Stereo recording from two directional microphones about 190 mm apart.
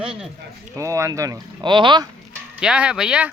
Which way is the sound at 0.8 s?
15° right (ahead or behind).